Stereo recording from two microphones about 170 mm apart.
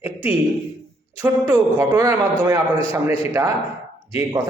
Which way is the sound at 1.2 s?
15° right (ahead or behind).